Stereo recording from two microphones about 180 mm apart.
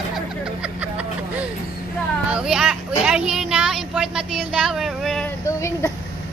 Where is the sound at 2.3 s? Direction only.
5° right (ahead or behind).